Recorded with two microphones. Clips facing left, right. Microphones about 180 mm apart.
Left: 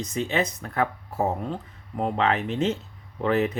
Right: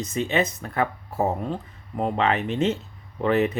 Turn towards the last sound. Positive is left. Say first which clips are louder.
# right 2 dB
turn(degrees=-5)  # may be behind; listen again after turning